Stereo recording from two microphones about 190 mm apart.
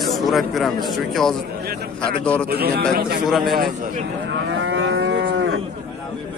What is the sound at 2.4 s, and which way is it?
Speech, 55° right (ahead or behind).